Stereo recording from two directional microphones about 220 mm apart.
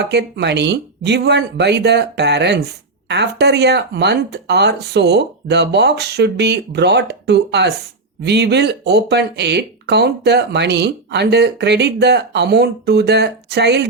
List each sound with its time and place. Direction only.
0.0 s speech: 50° right (ahead or behind)